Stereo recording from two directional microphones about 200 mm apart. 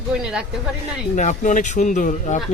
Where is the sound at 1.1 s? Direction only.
40° left (ahead or behind).